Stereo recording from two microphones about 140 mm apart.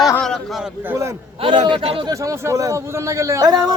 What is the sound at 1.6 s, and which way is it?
Speech, 40° right (ahead or behind).